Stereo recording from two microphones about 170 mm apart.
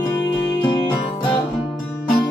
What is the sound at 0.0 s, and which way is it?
Music, 20° left (ahead or behind).